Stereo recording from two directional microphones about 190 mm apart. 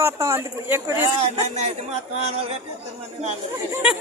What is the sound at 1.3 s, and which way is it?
Speech, 35° right (ahead or behind).